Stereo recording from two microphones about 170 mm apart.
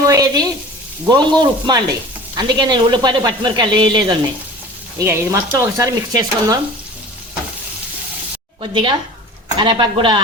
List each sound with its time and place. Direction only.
0.0 s speech: 20° right (ahead or behind)
4.9 s speech: 15° right (ahead or behind)
8.6 s speech: 30° right (ahead or behind)